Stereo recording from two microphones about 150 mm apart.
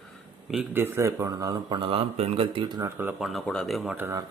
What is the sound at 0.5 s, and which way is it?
Speech, 15° right (ahead or behind).